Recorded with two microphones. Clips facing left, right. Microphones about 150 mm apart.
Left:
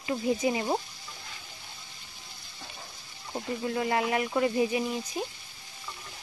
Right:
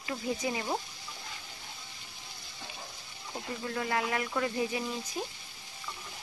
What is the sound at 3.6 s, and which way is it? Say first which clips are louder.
Speech: left 4 dB; 20° left (ahead or behind).